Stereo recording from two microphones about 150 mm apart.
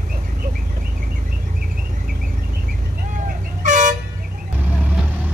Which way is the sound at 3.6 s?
55° right (ahead or behind).